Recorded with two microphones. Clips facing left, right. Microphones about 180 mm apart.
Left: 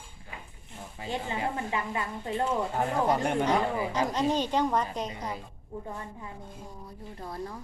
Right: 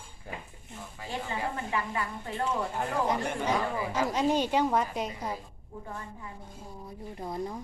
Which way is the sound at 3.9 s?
10° right (ahead or behind).